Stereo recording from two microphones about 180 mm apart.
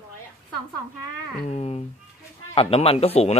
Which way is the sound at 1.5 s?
35° left (ahead or behind).